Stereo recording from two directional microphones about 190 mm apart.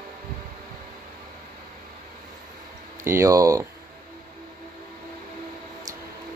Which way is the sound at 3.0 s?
15° right (ahead or behind).